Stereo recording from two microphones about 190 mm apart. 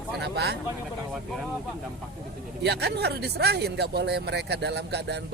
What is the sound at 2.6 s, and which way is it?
A man's voice, 60° right (ahead or behind).